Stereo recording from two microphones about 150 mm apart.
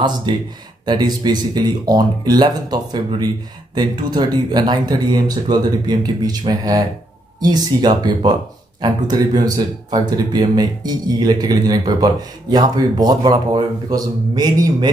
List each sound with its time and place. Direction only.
0.3 s speech: 30° right (ahead or behind)